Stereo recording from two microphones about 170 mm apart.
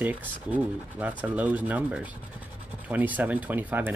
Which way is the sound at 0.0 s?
10° right (ahead or behind).